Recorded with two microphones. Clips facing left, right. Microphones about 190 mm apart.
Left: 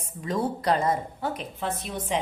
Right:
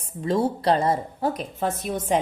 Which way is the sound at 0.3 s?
30° right (ahead or behind).